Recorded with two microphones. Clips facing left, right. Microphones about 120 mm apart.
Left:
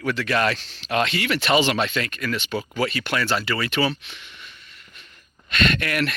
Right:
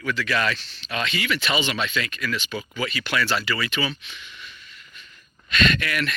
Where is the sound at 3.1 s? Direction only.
40° left (ahead or behind).